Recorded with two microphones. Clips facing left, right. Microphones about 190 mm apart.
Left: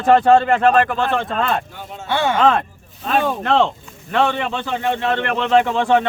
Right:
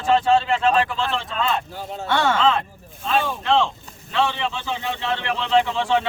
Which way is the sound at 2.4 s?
55° left (ahead or behind).